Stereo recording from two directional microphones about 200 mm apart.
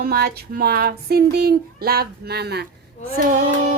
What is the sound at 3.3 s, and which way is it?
Speech, 40° right (ahead or behind).